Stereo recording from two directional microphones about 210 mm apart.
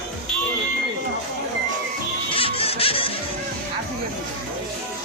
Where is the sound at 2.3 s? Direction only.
25° left (ahead or behind).